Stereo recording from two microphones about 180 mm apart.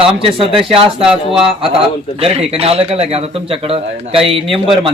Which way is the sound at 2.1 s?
35° right (ahead or behind).